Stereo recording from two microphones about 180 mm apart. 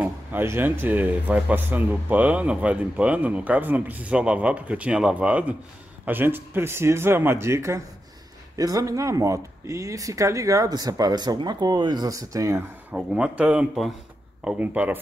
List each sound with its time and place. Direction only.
0.0 s a man's voice: 10° right (ahead or behind)
12.9 s a man's voice: 5° right (ahead or behind)